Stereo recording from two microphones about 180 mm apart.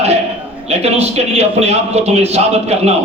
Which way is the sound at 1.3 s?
35° right (ahead or behind).